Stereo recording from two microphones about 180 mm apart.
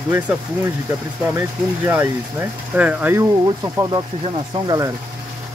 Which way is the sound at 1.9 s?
10° right (ahead or behind).